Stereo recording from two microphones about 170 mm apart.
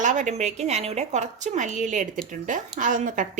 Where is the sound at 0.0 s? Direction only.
50° right (ahead or behind).